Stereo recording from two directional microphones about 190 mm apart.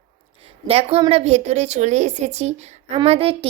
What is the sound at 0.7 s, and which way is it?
A child's voice, 30° right (ahead or behind).